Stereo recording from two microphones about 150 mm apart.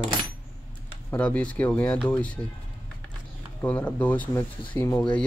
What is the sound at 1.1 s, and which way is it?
Speech, 10° left (ahead or behind).